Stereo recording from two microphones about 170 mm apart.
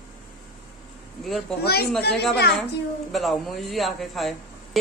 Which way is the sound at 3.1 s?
Centre (ahead or behind).